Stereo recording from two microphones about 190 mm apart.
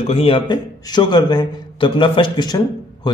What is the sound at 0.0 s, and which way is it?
A man's voice, 30° left (ahead or behind).